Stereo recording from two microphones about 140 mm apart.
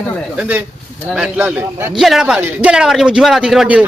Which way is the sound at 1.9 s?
Centre (ahead or behind).